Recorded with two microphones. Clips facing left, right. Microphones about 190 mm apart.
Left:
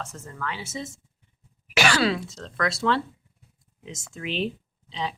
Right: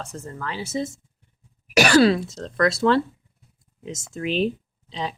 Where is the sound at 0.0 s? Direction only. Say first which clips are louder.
Right 2 dB; 35° right (ahead or behind).